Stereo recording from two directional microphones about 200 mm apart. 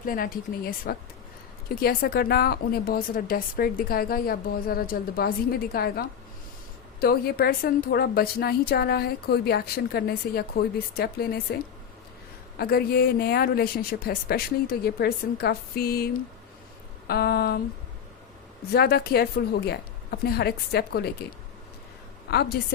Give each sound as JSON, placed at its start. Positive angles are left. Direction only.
{"t": 0.0, "sound": "a woman's voice", "side_deg": 45}
{"t": 12.5, "sound": "a woman's voice", "side_deg": 50}
{"t": 17.1, "sound": "a woman's voice", "side_deg": 50}
{"t": 18.7, "sound": "a woman's voice", "side_deg": 50}
{"t": 22.3, "sound": "a woman's voice", "side_deg": 50}